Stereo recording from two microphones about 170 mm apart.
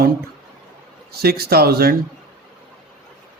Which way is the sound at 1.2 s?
65° right (ahead or behind).